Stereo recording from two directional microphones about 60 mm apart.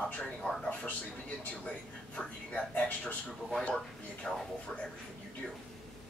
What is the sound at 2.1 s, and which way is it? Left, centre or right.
Speech, left.